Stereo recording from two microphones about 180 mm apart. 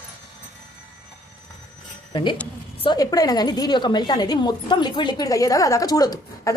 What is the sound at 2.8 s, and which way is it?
A woman's voice, 20° left (ahead or behind).